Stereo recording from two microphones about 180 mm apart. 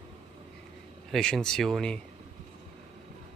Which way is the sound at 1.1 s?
5° left (ahead or behind).